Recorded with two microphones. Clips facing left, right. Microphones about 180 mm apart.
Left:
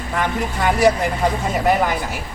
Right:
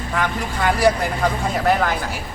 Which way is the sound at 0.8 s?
15° left (ahead or behind).